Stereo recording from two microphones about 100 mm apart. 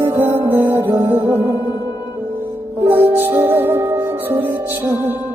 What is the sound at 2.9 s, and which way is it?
Music, 20° right (ahead or behind).